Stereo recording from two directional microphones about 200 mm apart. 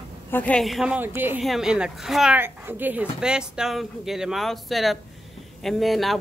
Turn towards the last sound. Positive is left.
turn(degrees=0)  # may be behind; listen again after turning